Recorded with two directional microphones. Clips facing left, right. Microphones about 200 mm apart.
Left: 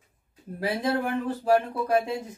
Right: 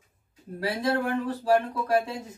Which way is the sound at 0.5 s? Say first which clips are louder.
Even; 25° left (ahead or behind).